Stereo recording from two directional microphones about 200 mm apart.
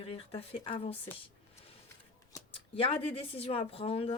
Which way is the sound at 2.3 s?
30° left (ahead or behind).